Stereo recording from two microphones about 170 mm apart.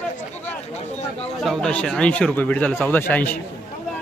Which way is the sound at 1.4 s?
Centre (ahead or behind).